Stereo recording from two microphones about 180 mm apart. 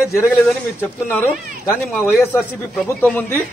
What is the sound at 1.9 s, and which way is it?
Speech, centre (ahead or behind).